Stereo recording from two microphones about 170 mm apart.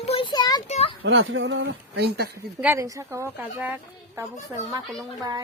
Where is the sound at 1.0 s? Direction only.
90° right.